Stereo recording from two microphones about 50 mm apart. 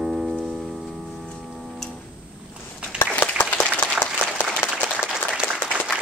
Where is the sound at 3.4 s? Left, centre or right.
Left.